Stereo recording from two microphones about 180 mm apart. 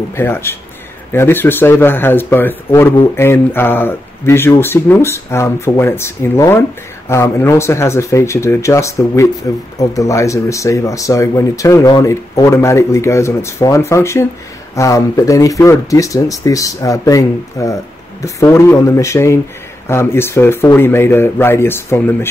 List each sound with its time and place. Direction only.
0.1 s speech: 15° left (ahead or behind)